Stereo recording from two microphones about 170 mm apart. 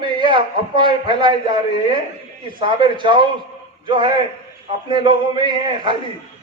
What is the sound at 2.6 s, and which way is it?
A man's voice, 30° right (ahead or behind).